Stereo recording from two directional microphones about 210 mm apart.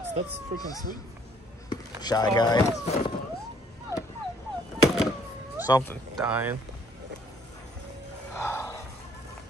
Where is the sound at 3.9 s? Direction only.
15° left (ahead or behind).